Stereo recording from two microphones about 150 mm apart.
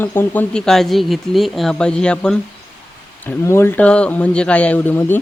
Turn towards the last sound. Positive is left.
turn(degrees=15)  # may be behind; listen again after turning